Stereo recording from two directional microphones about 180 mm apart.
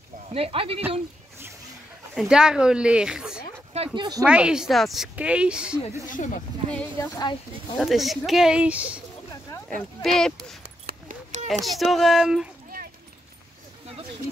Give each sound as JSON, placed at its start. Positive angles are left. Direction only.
{"t": 0.3, "sound": "speech", "side_deg": -30}
{"t": 2.1, "sound": "a woman's voice", "side_deg": -5}
{"t": 3.7, "sound": "speech", "side_deg": -30}
{"t": 4.2, "sound": "a woman's voice", "side_deg": -5}
{"t": 6.0, "sound": "speech", "side_deg": 45}
{"t": 6.7, "sound": "a woman's voice", "side_deg": 5}
{"t": 9.5, "sound": "a sound", "side_deg": 15}
{"t": 10.0, "sound": "a woman's voice", "side_deg": 0}
{"t": 10.9, "sound": "a sound", "side_deg": -45}
{"t": 11.6, "sound": "a woman's voice", "side_deg": 0}